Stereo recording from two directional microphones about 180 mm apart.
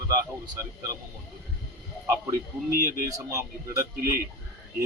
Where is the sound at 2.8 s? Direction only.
15° right (ahead or behind).